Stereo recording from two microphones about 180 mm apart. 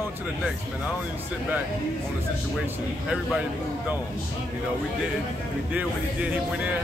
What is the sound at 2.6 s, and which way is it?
Speech, 5° right (ahead or behind).